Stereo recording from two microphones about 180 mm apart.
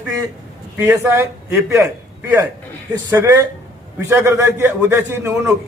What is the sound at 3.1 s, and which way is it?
A man's voice, 15° right (ahead or behind).